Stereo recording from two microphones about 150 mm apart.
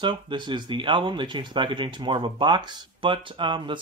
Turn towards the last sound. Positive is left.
turn(degrees=-30)  # may be behind; listen again after turning